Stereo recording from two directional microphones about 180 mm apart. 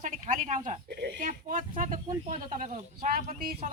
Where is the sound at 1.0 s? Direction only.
50° right (ahead or behind).